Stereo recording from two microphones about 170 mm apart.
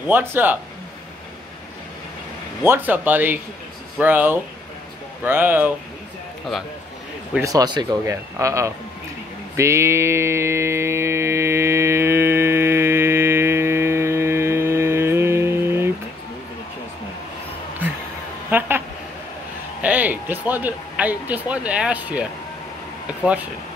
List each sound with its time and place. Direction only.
0.1 s speech: 10° right (ahead or behind)
2.6 s speech: 10° right (ahead or behind)
7.4 s speech: 20° right (ahead or behind)
9.6 s mantra: 15° right (ahead or behind)
17.8 s music: 10° right (ahead or behind)
18.5 s a sound: 10° right (ahead or behind)
19.8 s speech: 10° right (ahead or behind)